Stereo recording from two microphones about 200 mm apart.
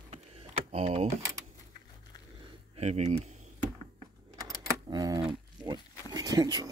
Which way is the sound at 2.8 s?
35° right (ahead or behind).